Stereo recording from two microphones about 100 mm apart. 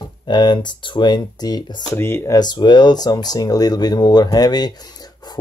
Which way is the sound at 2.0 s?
25° left (ahead or behind).